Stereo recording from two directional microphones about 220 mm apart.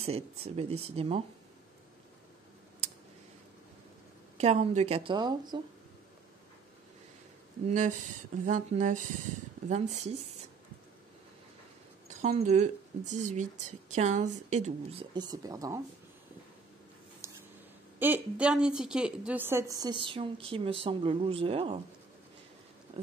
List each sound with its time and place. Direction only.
0.0 s a woman's voice: 30° right (ahead or behind)
4.4 s a woman's voice: 30° right (ahead or behind)
7.6 s a woman's voice: 35° right (ahead or behind)
12.1 s a woman's voice: 30° right (ahead or behind); by 15.8 s 15° right (ahead or behind)
17.2 s a sound: 10° right (ahead or behind)
17.9 s a woman's voice: 10° right (ahead or behind); by 21.8 s 25° right (ahead or behind)